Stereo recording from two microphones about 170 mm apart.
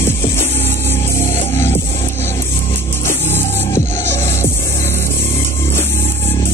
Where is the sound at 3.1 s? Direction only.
15° left (ahead or behind).